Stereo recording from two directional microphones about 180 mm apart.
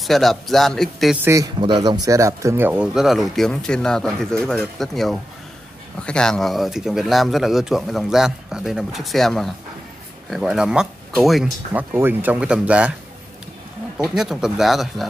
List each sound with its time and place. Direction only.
0.0 s speech: centre (ahead or behind)
1.2 s speech: 15° right (ahead or behind); by 11.8 s centre (ahead or behind)
11.9 s speech: 10° right (ahead or behind)
13.9 s speech: 5° right (ahead or behind)